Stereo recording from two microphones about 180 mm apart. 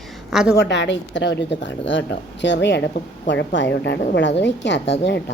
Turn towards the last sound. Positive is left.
turn(degrees=75)  # may be behind; listen again after turning